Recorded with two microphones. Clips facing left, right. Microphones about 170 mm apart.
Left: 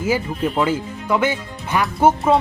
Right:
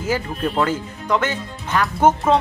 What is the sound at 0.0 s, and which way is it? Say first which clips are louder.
Speech: left 2 dB; 10° left (ahead or behind).